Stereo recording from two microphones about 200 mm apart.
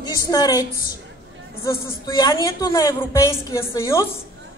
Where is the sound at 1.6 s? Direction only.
20° left (ahead or behind).